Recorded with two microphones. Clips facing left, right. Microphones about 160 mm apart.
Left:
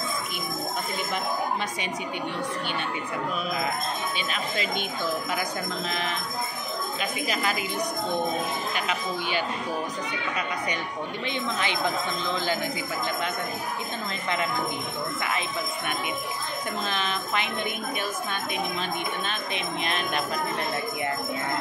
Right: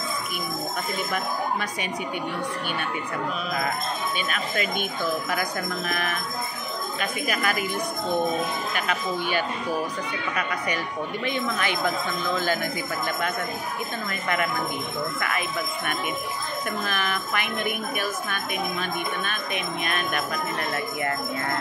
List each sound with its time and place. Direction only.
5.3 s speech: 20° left (ahead or behind)
11.2 s speech: 20° left (ahead or behind)
15.1 s speech: 20° left (ahead or behind)
16.8 s speech: 20° left (ahead or behind)